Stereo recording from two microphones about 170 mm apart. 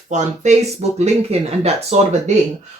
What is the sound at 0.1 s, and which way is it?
Speech, 40° right (ahead or behind).